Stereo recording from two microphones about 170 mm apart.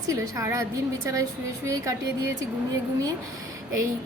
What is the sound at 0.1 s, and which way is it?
Speech, 20° right (ahead or behind).